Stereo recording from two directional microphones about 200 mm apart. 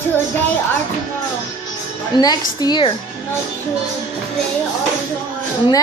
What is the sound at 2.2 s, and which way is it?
Speech, 20° left (ahead or behind).